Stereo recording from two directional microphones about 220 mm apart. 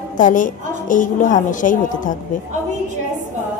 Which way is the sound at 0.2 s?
35° left (ahead or behind).